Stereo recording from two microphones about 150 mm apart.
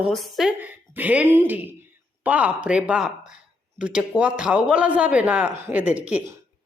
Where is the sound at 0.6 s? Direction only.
10° right (ahead or behind).